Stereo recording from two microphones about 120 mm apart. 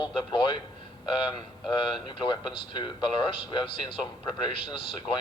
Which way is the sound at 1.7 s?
40° left (ahead or behind).